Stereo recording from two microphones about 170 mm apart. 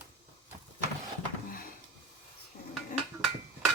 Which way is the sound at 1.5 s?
55° left (ahead or behind).